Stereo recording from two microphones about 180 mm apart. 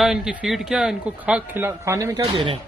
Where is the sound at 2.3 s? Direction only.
30° right (ahead or behind).